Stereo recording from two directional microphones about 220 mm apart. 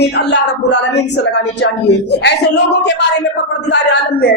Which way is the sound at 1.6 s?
50° left (ahead or behind).